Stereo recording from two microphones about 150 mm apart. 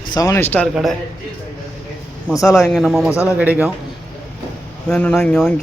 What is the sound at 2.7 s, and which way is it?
Speech, centre (ahead or behind).